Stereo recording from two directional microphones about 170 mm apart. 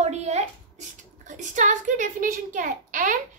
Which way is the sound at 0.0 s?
40° right (ahead or behind).